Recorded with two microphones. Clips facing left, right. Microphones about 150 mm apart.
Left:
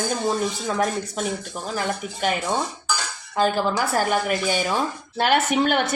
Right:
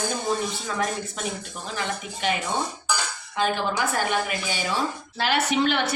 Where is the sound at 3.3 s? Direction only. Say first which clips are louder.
Left 4 dB; 40° left (ahead or behind).